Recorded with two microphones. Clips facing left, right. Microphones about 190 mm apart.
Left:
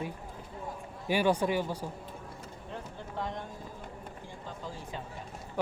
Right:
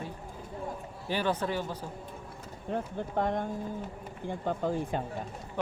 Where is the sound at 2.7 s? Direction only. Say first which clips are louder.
Right 9 dB; 55° right (ahead or behind).